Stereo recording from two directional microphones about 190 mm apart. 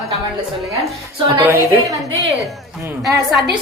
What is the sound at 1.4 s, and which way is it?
Speech, 15° right (ahead or behind).